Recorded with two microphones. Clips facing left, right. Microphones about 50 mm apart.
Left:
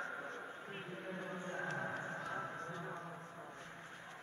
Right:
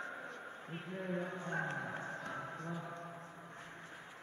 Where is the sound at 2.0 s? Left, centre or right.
Centre.